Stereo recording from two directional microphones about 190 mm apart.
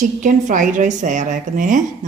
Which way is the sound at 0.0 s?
40° right (ahead or behind).